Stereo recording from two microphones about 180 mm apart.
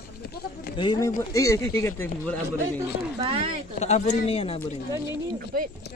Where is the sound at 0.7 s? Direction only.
25° left (ahead or behind).